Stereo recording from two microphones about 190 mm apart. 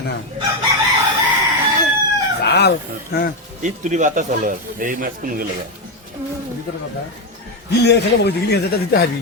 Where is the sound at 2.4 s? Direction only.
60° left (ahead or behind).